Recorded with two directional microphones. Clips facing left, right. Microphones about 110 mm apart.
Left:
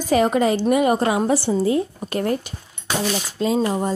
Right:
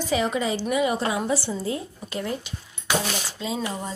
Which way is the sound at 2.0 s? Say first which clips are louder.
Left 7 dB; 55° left (ahead or behind).